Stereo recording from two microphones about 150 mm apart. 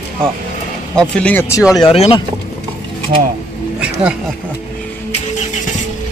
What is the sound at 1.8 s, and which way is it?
Speech, 40° left (ahead or behind).